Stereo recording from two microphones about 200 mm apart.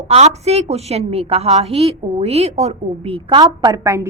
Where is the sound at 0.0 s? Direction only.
35° right (ahead or behind).